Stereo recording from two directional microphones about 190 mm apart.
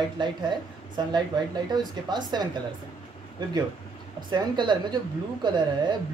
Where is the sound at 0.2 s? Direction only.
25° right (ahead or behind).